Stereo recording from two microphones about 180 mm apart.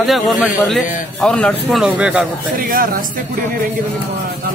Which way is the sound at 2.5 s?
50° right (ahead or behind).